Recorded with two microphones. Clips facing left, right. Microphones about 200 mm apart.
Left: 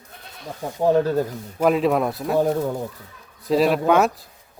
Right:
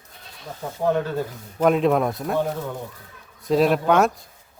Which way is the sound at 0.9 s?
35° left (ahead or behind).